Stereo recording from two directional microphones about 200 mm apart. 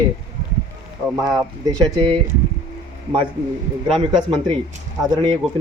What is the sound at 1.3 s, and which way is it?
Speech, 15° right (ahead or behind).